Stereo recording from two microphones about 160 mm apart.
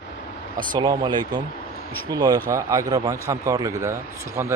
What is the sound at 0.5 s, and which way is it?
A man's voice, 30° right (ahead or behind).